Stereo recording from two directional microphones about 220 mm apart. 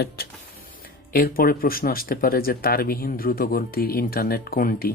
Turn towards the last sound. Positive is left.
turn(degrees=40)  # may be behind; listen again after turning